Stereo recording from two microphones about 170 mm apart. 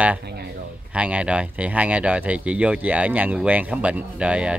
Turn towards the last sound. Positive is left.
turn(degrees=-5)  # may be behind; listen again after turning